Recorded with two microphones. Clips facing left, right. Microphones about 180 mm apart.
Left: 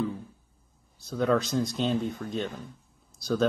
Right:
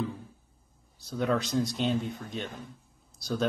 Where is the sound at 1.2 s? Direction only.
50° left (ahead or behind).